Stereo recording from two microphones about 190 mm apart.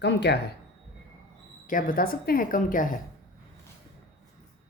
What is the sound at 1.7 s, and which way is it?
A woman's voice, 45° left (ahead or behind).